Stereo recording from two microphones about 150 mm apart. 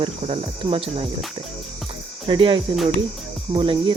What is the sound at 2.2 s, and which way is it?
Cricket, 35° right (ahead or behind).